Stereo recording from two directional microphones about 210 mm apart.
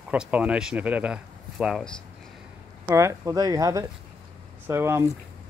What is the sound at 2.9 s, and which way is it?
A man's voice, 15° right (ahead or behind).